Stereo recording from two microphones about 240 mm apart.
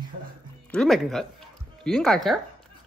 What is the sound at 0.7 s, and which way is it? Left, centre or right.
Speech, centre.